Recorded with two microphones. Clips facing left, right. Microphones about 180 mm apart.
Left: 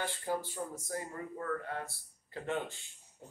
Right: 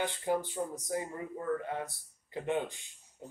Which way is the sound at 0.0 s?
20° right (ahead or behind).